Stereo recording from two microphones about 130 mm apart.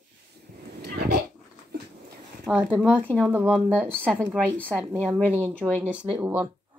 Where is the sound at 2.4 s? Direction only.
5° right (ahead or behind).